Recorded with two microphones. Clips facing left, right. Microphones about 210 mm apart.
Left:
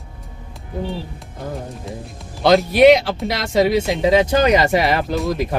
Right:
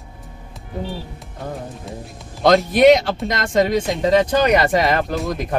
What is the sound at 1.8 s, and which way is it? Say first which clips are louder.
Speech: left 1 dB; centre (ahead or behind).